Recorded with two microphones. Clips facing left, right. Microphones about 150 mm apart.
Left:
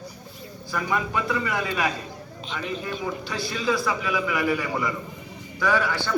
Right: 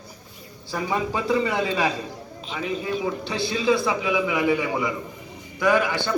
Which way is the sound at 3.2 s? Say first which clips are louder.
Right 5 dB; 25° right (ahead or behind).